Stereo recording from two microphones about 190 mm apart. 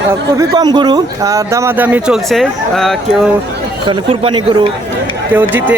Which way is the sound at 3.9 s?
25° right (ahead or behind).